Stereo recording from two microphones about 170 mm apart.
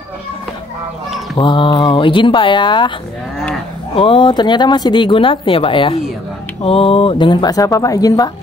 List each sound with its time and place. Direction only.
1.3 s speech: 30° left (ahead or behind)
3.9 s speech: 30° left (ahead or behind)